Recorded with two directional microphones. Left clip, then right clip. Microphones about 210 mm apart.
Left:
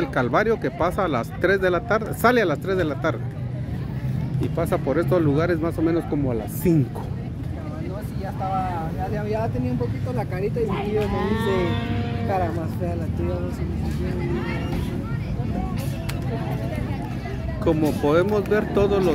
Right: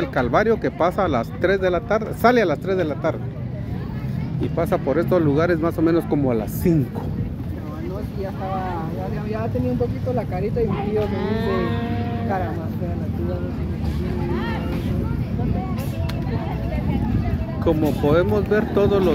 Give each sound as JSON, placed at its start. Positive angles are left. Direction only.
{"t": 0.1, "sound": "speech", "side_deg": 0}
{"t": 4.4, "sound": "speech", "side_deg": -5}
{"t": 6.6, "sound": "speech", "side_deg": 0}
{"t": 11.1, "sound": "speech", "side_deg": 55}
{"t": 17.6, "sound": "speech", "side_deg": 5}